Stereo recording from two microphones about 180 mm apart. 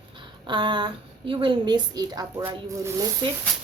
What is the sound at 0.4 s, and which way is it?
Speech, 25° right (ahead or behind).